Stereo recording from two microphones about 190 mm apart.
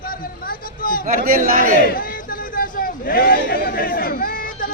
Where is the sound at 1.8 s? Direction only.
50° left (ahead or behind).